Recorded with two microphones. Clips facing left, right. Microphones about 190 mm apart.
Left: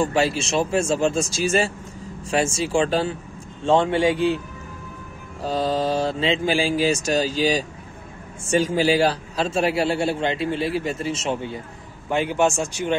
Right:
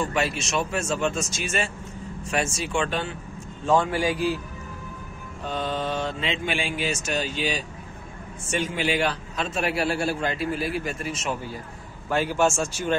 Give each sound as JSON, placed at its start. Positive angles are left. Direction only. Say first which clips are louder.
{"t": 0.0, "sound": "a man's voice", "louder": "left 5 dB", "side_deg": 30}
{"t": 5.4, "sound": "a man's voice", "louder": "left 6 dB", "side_deg": 35}